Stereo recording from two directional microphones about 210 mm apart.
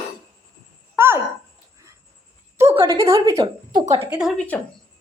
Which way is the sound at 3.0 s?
25° right (ahead or behind).